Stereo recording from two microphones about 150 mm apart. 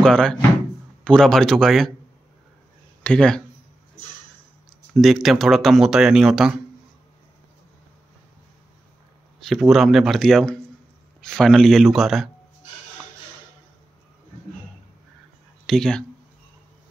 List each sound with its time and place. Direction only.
0.0 s speech: 5° left (ahead or behind)
3.0 s speech: 5° left (ahead or behind)
4.9 s speech: centre (ahead or behind)
9.4 s speech: centre (ahead or behind)
15.6 s speech: 5° left (ahead or behind)